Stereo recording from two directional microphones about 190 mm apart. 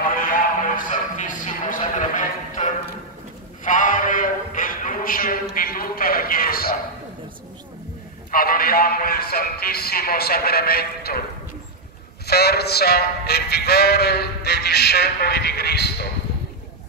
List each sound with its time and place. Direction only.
0.1 s music: 45° left (ahead or behind)
3.6 s a sound: 45° left (ahead or behind)
8.3 s music: 50° left (ahead or behind)
12.3 s music: 55° left (ahead or behind)